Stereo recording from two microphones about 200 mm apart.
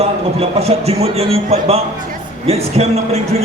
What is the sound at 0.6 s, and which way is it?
A man's voice, 30° right (ahead or behind).